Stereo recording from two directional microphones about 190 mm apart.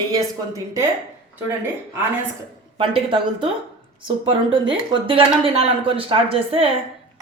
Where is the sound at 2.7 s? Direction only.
25° right (ahead or behind).